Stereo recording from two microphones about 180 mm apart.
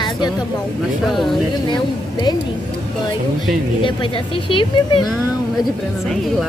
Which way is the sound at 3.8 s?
30° left (ahead or behind).